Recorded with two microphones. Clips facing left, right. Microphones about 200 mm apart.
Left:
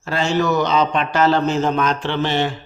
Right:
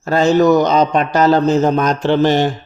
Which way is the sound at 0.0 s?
40° right (ahead or behind).